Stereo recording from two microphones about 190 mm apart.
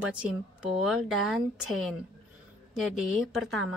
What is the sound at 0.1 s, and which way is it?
A woman's voice, 5° right (ahead or behind).